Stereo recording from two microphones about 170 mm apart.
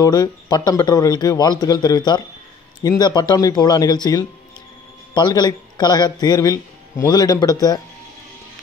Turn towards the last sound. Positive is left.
turn(degrees=20)  # may be behind; listen again after turning